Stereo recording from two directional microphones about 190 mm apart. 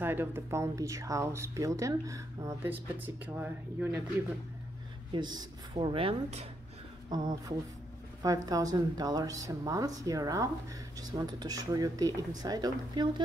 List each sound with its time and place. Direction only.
0.0 s speech: 10° right (ahead or behind)
5.1 s a woman's voice: 20° right (ahead or behind)